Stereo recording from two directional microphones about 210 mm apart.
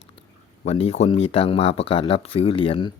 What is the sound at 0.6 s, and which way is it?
Speech, 30° left (ahead or behind).